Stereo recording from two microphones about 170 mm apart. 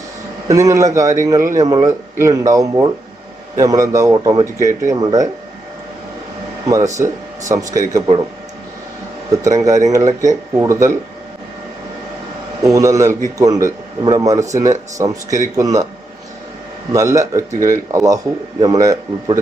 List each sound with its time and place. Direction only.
0.4 s speech: 20° right (ahead or behind)
6.7 s speech: 20° right (ahead or behind)
9.3 s speech: 20° right (ahead or behind)
12.6 s speech: 20° right (ahead or behind)
16.9 s speech: 20° right (ahead or behind)